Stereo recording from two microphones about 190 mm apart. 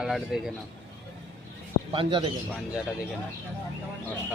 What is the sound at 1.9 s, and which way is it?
Speech, 30° right (ahead or behind).